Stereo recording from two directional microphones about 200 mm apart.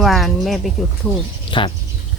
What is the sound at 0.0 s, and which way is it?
Speech, centre (ahead or behind).